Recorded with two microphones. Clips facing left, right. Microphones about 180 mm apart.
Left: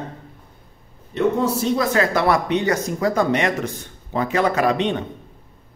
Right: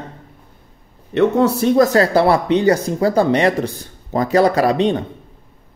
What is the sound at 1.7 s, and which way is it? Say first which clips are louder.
Speech: right 9 dB; 40° right (ahead or behind).